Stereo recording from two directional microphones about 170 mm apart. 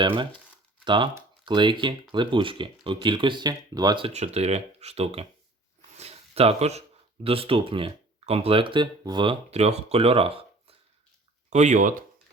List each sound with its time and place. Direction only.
0.0 s speech: 30° right (ahead or behind)
6.0 s a sound: 35° right (ahead or behind)
7.3 s speech: 35° right (ahead or behind)
11.5 s speech: 45° right (ahead or behind)